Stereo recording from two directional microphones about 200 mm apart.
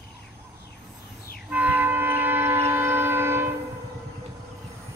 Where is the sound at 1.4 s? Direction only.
10° right (ahead or behind).